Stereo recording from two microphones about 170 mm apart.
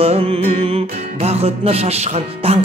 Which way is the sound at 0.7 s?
35° right (ahead or behind).